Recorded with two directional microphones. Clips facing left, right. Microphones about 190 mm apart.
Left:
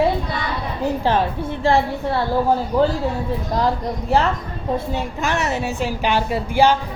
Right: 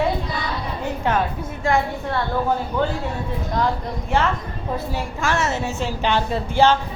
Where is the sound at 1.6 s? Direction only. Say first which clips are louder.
Left 3 dB; 30° left (ahead or behind).